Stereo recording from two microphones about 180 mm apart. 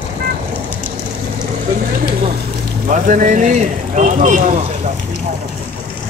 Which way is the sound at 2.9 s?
45° right (ahead or behind).